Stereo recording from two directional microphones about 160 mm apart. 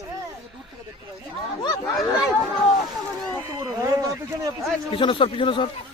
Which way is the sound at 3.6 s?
20° right (ahead or behind).